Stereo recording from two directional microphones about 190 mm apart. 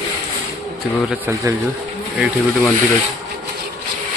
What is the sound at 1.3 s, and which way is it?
Speech, 15° right (ahead or behind).